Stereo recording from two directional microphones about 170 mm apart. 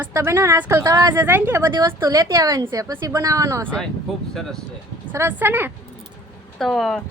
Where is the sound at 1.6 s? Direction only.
20° right (ahead or behind).